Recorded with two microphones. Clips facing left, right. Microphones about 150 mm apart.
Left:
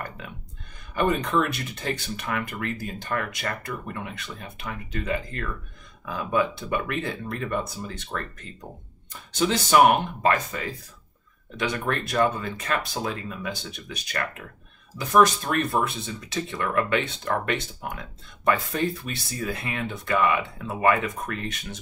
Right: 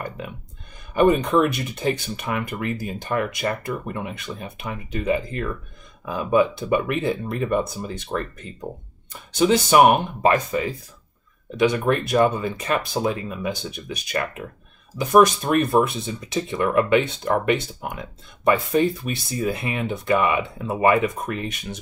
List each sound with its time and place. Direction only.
0.9 s speech: 15° right (ahead or behind)
9.3 s speech: 15° right (ahead or behind)
11.9 s speech: 15° right (ahead or behind)